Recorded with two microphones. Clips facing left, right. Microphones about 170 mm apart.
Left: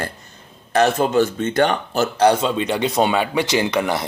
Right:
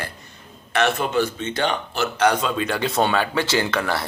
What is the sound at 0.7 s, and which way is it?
Speech, 40° left (ahead or behind).